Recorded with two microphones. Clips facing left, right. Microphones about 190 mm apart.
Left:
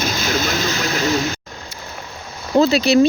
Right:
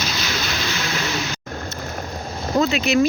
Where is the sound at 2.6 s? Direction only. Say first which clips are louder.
Left 5 dB; 35° left (ahead or behind).